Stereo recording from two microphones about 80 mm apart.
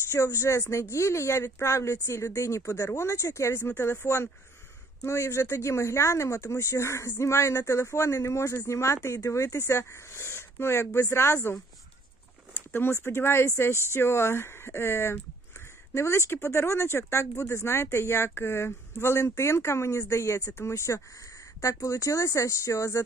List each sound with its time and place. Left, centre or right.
0.1 s speech: left
12.7 s speech: left